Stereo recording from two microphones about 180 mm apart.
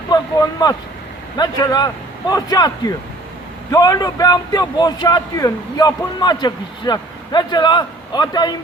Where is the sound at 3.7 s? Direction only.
20° left (ahead or behind).